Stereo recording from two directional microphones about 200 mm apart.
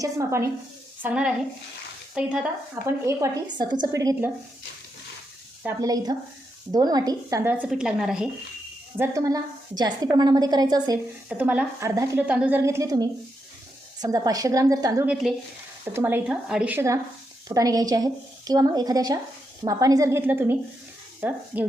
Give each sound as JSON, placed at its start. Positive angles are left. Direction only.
{"t": 0.0, "sound": "a woman's voice", "side_deg": -15}
{"t": 5.6, "sound": "a woman's voice", "side_deg": -15}
{"t": 9.0, "sound": "a woman's voice", "side_deg": -15}
{"t": 11.3, "sound": "a woman's voice", "side_deg": -5}